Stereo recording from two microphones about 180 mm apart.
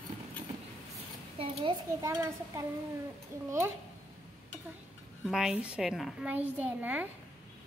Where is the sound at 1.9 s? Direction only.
15° right (ahead or behind).